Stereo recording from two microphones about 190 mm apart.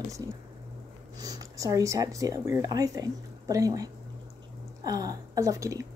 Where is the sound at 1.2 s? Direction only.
20° right (ahead or behind).